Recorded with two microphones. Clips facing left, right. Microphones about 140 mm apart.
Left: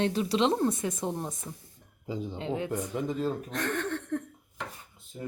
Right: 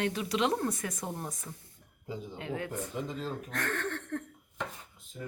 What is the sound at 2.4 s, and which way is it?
Speech, 25° left (ahead or behind).